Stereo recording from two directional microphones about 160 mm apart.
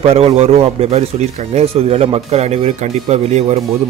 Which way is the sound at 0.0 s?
40° right (ahead or behind).